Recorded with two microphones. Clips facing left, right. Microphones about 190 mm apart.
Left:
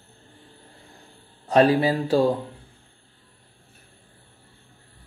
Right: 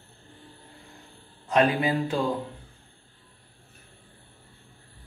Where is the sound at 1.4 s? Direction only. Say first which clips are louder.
Left 5 dB; 35° left (ahead or behind).